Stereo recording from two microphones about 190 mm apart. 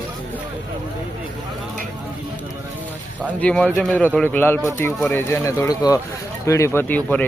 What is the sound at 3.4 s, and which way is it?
Speech, 5° left (ahead or behind).